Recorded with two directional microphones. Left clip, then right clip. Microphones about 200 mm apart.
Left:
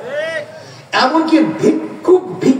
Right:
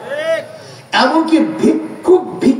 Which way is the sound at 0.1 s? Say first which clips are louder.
Right 4 dB; 60° right (ahead or behind).